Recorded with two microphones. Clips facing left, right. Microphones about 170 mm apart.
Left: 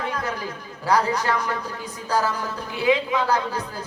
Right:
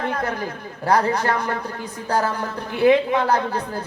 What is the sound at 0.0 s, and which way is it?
A man's voice, 55° right (ahead or behind).